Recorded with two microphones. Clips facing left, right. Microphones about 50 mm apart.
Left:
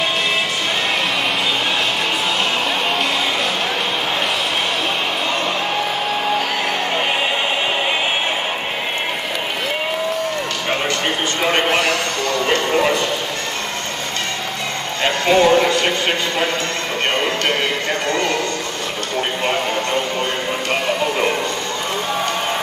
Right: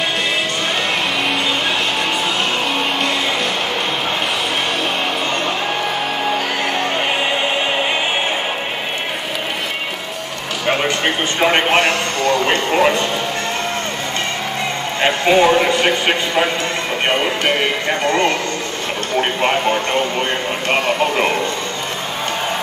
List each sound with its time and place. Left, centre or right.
11.3 s a man's voice: centre
11.7 s a sound: right
15.0 s a man's voice: right
17.1 s music: centre
18.0 s a man's voice: right
19.4 s speech: right